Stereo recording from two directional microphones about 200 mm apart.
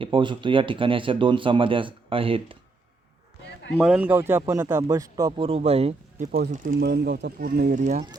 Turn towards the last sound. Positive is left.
turn(degrees=-40)  # may be behind; listen again after turning